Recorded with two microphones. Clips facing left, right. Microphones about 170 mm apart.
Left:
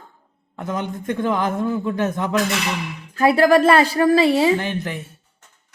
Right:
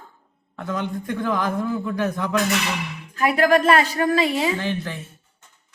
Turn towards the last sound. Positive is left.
turn(degrees=15)  # may be behind; listen again after turning